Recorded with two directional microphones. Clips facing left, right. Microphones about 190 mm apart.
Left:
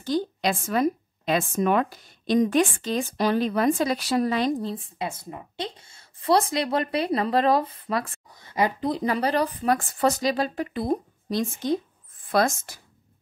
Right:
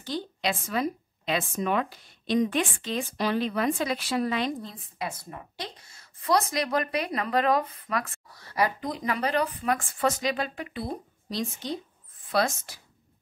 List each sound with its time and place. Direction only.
0.0 s a woman's voice: 45° left (ahead or behind)